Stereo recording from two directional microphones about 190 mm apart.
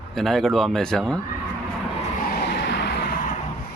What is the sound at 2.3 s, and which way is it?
Vehicle, 60° left (ahead or behind).